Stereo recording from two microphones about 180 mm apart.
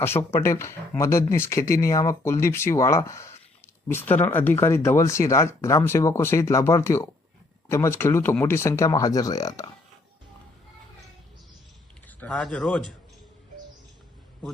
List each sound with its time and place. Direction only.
0.2 s speech: 15° left (ahead or behind)
12.0 s speech: 5° left (ahead or behind)